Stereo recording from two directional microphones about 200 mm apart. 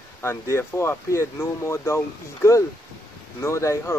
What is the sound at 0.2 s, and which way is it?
Speech, 15° left (ahead or behind).